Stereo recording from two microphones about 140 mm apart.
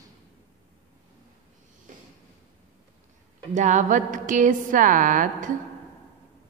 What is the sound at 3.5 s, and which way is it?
A woman's voice, 60° right (ahead or behind).